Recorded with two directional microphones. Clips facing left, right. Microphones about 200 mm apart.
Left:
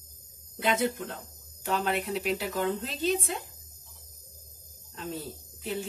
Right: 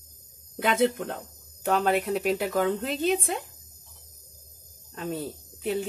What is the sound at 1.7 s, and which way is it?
Speech, 55° right (ahead or behind).